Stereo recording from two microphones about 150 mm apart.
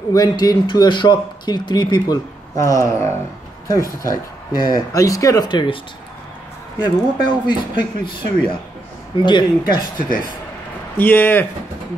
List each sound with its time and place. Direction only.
0.1 s a man's voice: 25° left (ahead or behind)
6.8 s a man's voice: 30° left (ahead or behind)
11.0 s speech: 15° left (ahead or behind)